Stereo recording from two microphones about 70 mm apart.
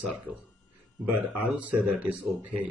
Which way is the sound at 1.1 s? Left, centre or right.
Centre.